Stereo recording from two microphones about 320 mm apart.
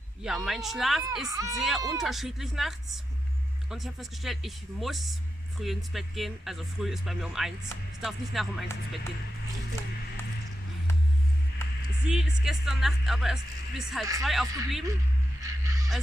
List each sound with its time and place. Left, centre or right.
0.2 s speech: centre
3.7 s speech: centre
12.1 s speech: centre
15.4 s music: centre